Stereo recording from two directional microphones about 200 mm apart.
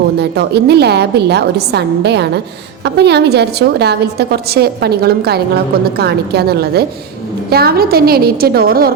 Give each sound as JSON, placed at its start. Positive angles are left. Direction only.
{"t": 0.2, "sound": "a woman's voice", "side_deg": -55}